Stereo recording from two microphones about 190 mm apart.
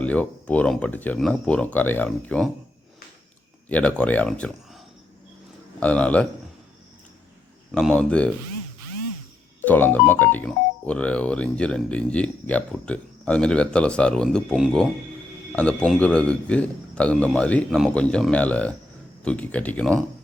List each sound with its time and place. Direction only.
0.0 s speech: 5° left (ahead or behind)
3.7 s speech: 5° left (ahead or behind)
5.8 s speech: 5° left (ahead or behind)
7.7 s speech: 5° left (ahead or behind)
9.6 s speech: 10° left (ahead or behind)